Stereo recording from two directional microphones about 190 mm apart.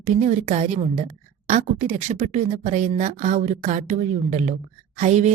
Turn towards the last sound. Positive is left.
turn(degrees=-40)  # may be behind; listen again after turning